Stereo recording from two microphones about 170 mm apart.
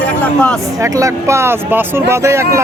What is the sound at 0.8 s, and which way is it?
Speech, 20° right (ahead or behind).